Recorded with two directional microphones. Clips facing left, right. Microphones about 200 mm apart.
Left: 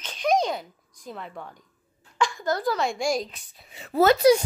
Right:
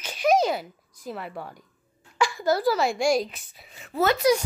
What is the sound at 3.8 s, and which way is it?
Speech, 35° left (ahead or behind).